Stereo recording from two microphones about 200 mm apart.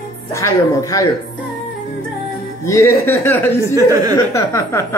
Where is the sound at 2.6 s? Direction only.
15° left (ahead or behind).